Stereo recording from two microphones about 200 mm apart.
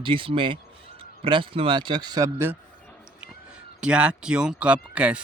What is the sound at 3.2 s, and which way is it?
Speech, 5° right (ahead or behind).